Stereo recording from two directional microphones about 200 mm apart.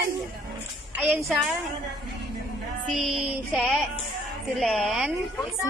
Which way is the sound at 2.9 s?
Centre (ahead or behind).